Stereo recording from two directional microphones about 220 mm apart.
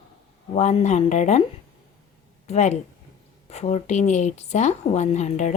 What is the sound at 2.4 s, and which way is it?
A woman's voice, 30° left (ahead or behind).